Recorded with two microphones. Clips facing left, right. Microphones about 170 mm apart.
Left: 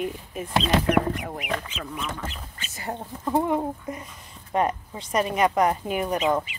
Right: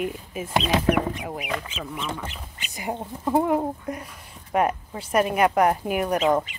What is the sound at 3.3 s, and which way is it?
Speech, 5° right (ahead or behind).